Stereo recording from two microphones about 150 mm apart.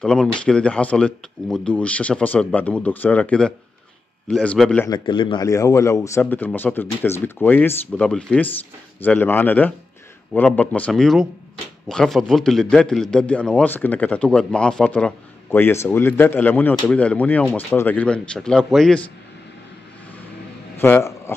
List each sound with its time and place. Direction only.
0.0 s a man's voice: 5° left (ahead or behind)
4.8 s a man's voice: 30° left (ahead or behind)
5.5 s a man's voice: 20° left (ahead or behind); by 19.0 s 5° left (ahead or behind)
20.7 s speech: 15° left (ahead or behind)